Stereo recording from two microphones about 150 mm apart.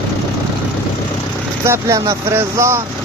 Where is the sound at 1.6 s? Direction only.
20° right (ahead or behind).